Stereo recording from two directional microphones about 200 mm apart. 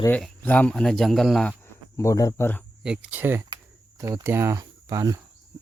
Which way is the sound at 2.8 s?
5° right (ahead or behind).